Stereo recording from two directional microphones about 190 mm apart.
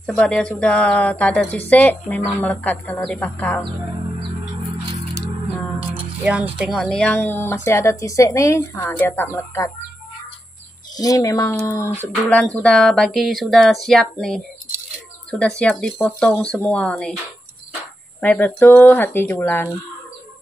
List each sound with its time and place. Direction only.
0.0 s speech: 5° left (ahead or behind)
5.8 s speech: 5° right (ahead or behind); by 9.7 s 10° left (ahead or behind)
11.0 s speech: 20° left (ahead or behind); by 14.4 s centre (ahead or behind)
15.6 s speech: 5° left (ahead or behind)
18.2 s speech: 10° left (ahead or behind)